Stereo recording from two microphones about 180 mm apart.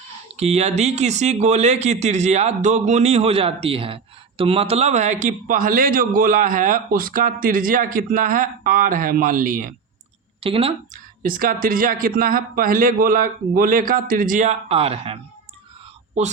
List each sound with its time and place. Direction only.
0.3 s speech: 35° right (ahead or behind)
10.4 s speech: 30° right (ahead or behind)
10.9 s speech: 50° right (ahead or behind); by 15.2 s 35° right (ahead or behind)